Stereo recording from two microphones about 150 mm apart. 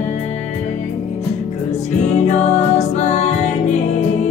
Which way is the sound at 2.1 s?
50° left (ahead or behind).